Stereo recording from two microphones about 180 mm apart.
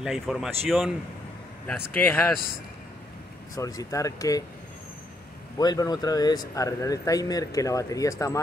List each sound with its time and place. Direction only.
0.0 s speech: 5° right (ahead or behind)
2.0 s speech: 10° left (ahead or behind)
3.5 s speech: 20° left (ahead or behind)
5.6 s speech: 20° left (ahead or behind)